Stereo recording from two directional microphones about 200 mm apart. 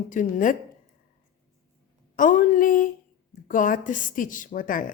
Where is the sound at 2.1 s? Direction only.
40° left (ahead or behind).